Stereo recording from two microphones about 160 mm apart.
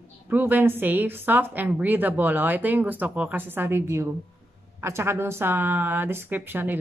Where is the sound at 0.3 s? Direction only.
10° right (ahead or behind).